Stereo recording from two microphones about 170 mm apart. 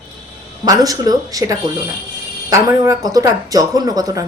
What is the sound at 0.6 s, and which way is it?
Speech, 20° right (ahead or behind).